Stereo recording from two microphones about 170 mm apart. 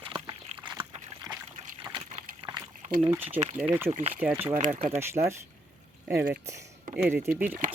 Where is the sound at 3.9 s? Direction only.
40° right (ahead or behind).